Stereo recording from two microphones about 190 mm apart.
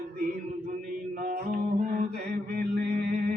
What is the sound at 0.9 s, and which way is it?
Music, 45° right (ahead or behind).